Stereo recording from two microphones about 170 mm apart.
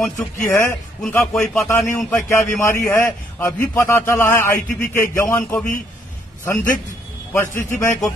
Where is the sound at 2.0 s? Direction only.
15° left (ahead or behind).